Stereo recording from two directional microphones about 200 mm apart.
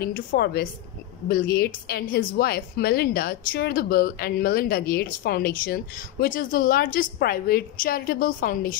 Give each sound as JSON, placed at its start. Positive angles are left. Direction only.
{"t": 0.0, "sound": "a woman's voice", "side_deg": 50}